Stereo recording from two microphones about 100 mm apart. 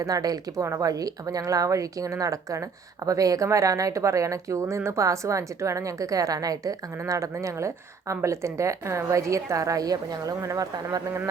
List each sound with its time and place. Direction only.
0.0 s speech: 40° right (ahead or behind)